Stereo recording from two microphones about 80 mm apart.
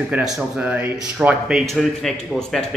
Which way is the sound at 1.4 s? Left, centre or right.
Centre.